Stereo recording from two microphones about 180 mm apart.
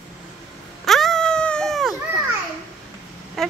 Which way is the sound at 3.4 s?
Centre (ahead or behind).